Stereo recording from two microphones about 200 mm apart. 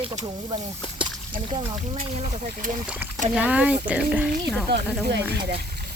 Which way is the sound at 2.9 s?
5° right (ahead or behind).